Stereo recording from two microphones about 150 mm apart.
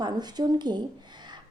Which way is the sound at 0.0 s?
30° right (ahead or behind).